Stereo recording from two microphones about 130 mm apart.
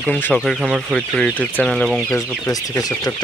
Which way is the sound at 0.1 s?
10° left (ahead or behind).